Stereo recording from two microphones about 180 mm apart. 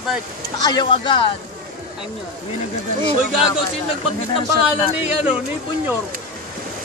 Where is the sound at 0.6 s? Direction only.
25° left (ahead or behind).